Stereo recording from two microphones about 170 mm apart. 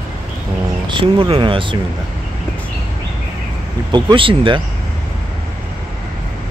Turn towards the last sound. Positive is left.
turn(degrees=-30)  # may be behind; listen again after turning